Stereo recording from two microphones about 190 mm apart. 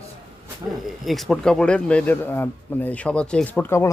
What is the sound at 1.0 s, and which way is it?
Speech, centre (ahead or behind).